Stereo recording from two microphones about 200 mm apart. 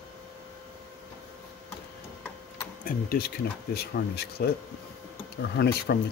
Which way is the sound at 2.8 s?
50° left (ahead or behind).